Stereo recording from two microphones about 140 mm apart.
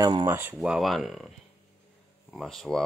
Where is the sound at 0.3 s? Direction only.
15° right (ahead or behind).